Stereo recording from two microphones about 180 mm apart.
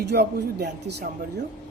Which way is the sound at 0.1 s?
65° right (ahead or behind).